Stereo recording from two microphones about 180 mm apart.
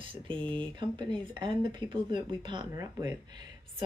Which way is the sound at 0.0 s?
30° right (ahead or behind).